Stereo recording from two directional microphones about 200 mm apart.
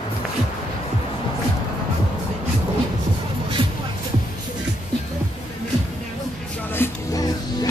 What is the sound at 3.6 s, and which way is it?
Music, 25° right (ahead or behind).